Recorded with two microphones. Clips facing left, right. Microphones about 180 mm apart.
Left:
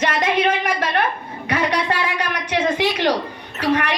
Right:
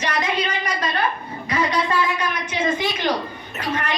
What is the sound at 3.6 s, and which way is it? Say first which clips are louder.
Speech: left 6 dB; 70° left (ahead or behind).